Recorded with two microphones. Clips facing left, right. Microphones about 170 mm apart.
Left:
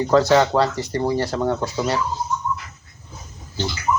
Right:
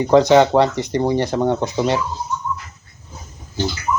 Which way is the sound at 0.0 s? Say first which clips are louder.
Right 4 dB; 20° right (ahead or behind).